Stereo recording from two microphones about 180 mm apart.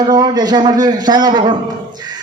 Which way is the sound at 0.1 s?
20° right (ahead or behind).